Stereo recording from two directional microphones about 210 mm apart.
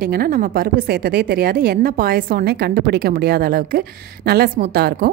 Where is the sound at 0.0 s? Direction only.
45° right (ahead or behind).